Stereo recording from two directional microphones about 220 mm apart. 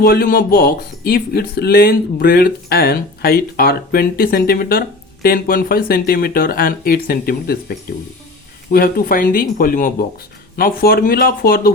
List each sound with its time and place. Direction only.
0.0 s speech: 40° left (ahead or behind)